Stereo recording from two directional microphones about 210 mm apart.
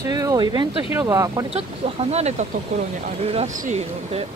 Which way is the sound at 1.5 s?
30° right (ahead or behind).